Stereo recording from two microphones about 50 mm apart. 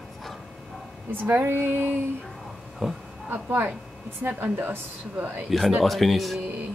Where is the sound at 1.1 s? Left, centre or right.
Right.